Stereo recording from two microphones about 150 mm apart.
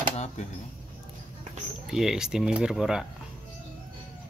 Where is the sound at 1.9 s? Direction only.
5° right (ahead or behind).